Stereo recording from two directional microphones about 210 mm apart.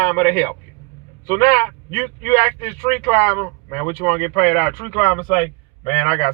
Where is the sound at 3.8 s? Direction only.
15° left (ahead or behind).